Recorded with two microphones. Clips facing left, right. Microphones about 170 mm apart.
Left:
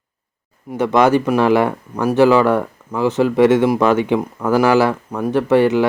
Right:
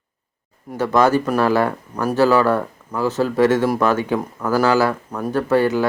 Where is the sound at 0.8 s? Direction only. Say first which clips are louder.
Left 2 dB; 20° left (ahead or behind).